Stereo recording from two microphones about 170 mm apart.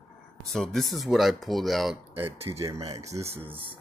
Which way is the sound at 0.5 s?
Centre (ahead or behind).